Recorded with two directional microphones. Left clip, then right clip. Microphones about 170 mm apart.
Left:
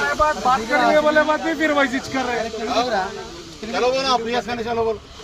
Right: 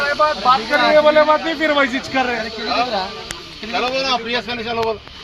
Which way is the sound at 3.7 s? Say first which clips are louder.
Even; 50° right (ahead or behind).